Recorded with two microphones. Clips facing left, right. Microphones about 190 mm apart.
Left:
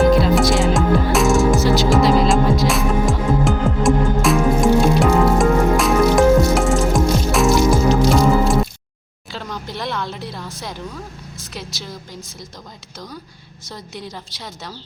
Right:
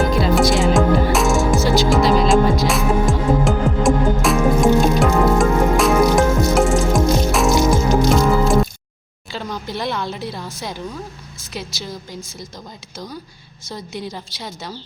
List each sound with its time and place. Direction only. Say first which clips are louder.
0.2 s music: even; centre (ahead or behind)
9.3 s a sound: right 3 dB; 5° right (ahead or behind)
11.5 s a woman's voice: right 3 dB; centre (ahead or behind)
13.7 s a woman's voice: right 4 dB; centre (ahead or behind)